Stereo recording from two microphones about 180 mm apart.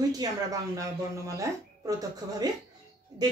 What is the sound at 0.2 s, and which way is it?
A woman's voice, 20° right (ahead or behind).